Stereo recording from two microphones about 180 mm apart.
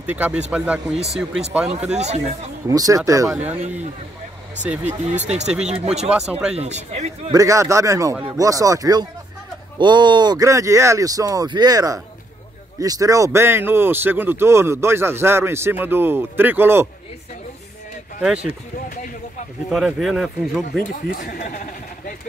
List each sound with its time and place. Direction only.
0.1 s speech: 10° right (ahead or behind)
2.0 s a man's voice: 40° right (ahead or behind)
2.7 s speech: 20° right (ahead or behind)
3.3 s speech: 10° right (ahead or behind)
4.8 s a man's voice: 40° right (ahead or behind)
6.0 s speech: 5° right (ahead or behind)
6.5 s a man's voice: 35° right (ahead or behind)
7.3 s speech: 15° right (ahead or behind)
19.7 s speech: centre (ahead or behind)
21.1 s speech: 50° left (ahead or behind)